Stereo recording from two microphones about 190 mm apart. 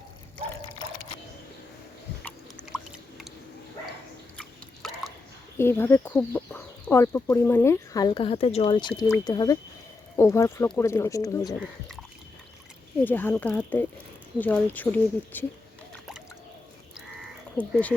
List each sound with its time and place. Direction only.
4.4 s drip: centre (ahead or behind)
5.5 s speech: 15° left (ahead or behind)
13.1 s speech: 10° left (ahead or behind)
17.6 s speech: 5° left (ahead or behind)